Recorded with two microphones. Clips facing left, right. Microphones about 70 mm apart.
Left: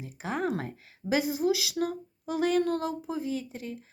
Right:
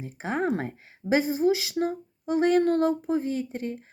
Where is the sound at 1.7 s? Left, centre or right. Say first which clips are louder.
Right 3 dB; right.